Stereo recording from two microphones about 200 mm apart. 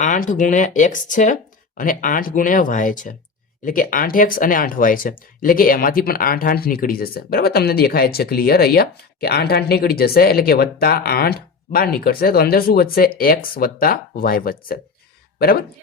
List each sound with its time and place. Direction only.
0.0 s speech: 40° left (ahead or behind)